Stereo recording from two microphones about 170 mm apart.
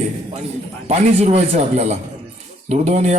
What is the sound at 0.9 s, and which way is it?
A man's voice, 40° right (ahead or behind).